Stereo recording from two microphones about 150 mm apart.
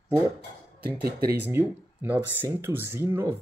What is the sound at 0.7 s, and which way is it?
Speech, 90° right.